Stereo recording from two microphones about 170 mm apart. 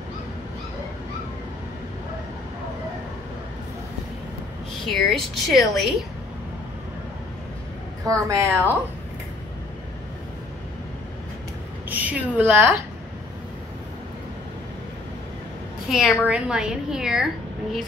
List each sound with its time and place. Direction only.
4.8 s a woman's voice: 5° left (ahead or behind)
8.1 s speech: 20° right (ahead or behind)
11.9 s a woman's voice: 10° right (ahead or behind)
15.9 s a woman's voice: centre (ahead or behind)